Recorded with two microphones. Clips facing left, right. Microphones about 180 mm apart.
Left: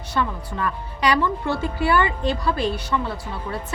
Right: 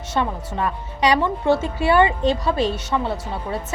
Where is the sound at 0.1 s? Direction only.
25° right (ahead or behind).